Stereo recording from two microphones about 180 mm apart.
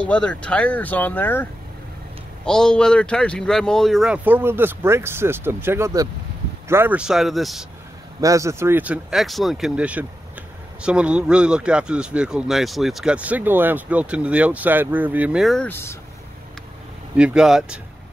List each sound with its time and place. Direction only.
0.0 s a man's voice: 5° left (ahead or behind)
8.2 s a man's voice: 20° right (ahead or behind); by 16.0 s 15° left (ahead or behind)
17.2 s a man's voice: 5° right (ahead or behind)